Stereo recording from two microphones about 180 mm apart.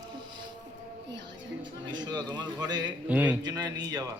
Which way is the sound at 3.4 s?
20° right (ahead or behind).